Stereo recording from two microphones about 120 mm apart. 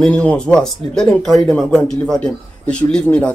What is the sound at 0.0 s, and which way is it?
Speech, 5° left (ahead or behind).